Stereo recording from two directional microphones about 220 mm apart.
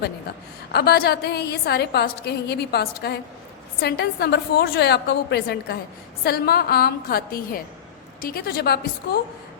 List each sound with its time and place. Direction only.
0.7 s a woman's voice: 50° left (ahead or behind)